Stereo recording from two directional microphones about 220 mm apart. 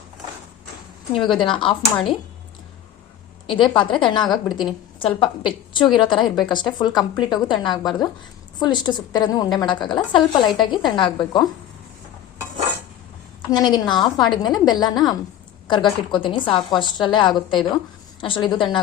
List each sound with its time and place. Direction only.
1.1 s a woman's voice: 20° left (ahead or behind)
3.4 s a woman's voice: 20° left (ahead or behind)
13.5 s a woman's voice: 20° left (ahead or behind)